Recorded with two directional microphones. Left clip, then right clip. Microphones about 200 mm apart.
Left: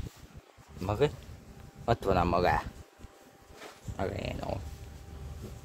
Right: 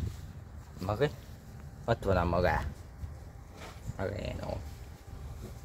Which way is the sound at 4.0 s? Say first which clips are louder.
Left 2 dB; 20° left (ahead or behind).